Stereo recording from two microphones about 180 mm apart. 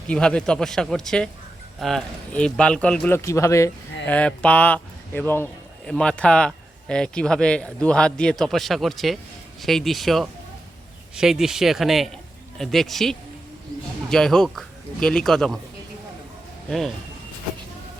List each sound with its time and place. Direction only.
0.1 s a man's voice: 5° left (ahead or behind)
3.2 s a man's voice: 15° left (ahead or behind)
16.6 s a man's voice: centre (ahead or behind)